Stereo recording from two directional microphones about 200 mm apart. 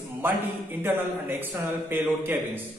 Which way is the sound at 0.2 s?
10° right (ahead or behind).